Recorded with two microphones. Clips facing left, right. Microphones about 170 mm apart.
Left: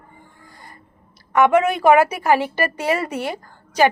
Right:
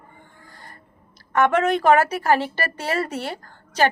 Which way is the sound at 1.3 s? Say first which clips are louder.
Left 3 dB; 15° left (ahead or behind).